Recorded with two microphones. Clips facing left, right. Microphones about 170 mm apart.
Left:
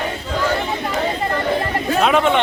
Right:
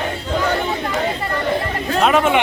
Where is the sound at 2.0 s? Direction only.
5° right (ahead or behind).